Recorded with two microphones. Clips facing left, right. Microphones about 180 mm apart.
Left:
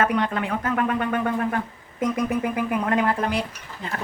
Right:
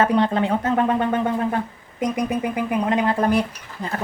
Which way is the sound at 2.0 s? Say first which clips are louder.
Right 1 dB; 15° right (ahead or behind).